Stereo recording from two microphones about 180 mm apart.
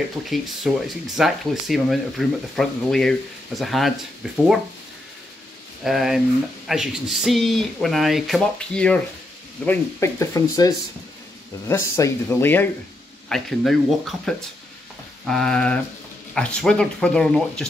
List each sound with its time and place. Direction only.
0.3 s speech: centre (ahead or behind)
5.9 s speech: centre (ahead or behind)